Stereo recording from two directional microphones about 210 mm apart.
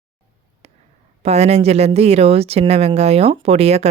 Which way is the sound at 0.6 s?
30° right (ahead or behind).